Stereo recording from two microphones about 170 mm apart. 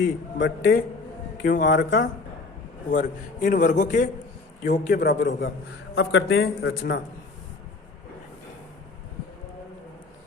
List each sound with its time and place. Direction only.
0.0 s a man's voice: 90° left
1.5 s a man's voice: 50° left (ahead or behind)
1.7 s a man's voice: 90° left
2.9 s a man's voice: 55° left (ahead or behind)
5.9 s speech: 85° left